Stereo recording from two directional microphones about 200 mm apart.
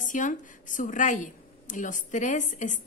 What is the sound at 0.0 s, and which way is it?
A woman's voice, 40° left (ahead or behind).